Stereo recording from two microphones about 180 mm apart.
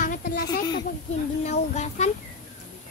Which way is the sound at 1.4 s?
40° left (ahead or behind).